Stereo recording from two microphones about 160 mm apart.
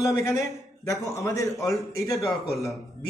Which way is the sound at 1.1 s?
20° left (ahead or behind).